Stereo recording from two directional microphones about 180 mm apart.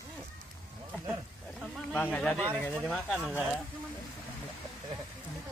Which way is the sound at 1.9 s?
10° left (ahead or behind).